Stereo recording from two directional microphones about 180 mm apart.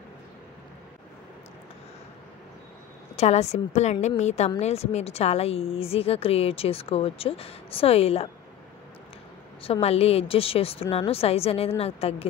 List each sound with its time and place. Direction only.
3.2 s speech: 35° left (ahead or behind)
9.6 s speech: 35° left (ahead or behind)